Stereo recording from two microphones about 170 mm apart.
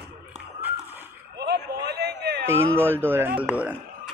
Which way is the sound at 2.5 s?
15° right (ahead or behind).